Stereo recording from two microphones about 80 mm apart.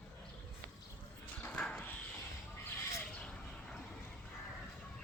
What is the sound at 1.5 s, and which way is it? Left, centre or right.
Dog, centre.